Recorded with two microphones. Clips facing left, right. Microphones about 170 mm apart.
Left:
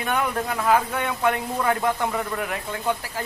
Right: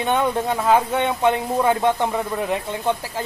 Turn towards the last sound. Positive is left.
turn(degrees=-25)  # may be behind; listen again after turning